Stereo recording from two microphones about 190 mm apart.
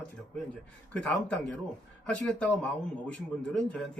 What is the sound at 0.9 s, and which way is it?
Speech, 5° left (ahead or behind).